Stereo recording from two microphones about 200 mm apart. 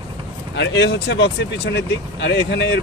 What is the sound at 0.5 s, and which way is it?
Speech, 60° left (ahead or behind).